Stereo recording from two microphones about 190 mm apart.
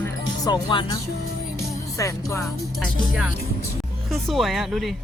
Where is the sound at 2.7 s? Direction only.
Centre (ahead or behind).